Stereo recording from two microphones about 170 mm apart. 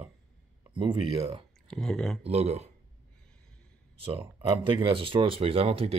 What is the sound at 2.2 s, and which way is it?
Speech, 35° right (ahead or behind).